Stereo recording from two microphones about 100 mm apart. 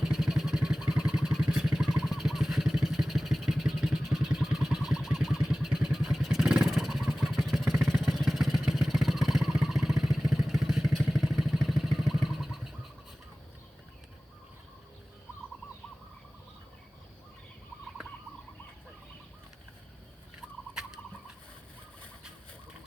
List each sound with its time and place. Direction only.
0.0 s vehicle: 5° right (ahead or behind)
20.7 s fowl: 5° right (ahead or behind)